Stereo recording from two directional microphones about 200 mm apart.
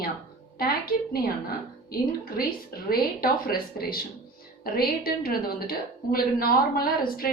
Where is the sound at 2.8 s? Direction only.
50° left (ahead or behind).